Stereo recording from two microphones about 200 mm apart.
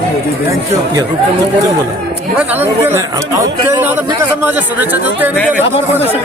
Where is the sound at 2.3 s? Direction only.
10° right (ahead or behind).